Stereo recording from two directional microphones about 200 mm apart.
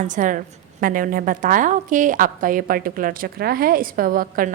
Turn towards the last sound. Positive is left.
turn(degrees=-45)  # may be behind; listen again after turning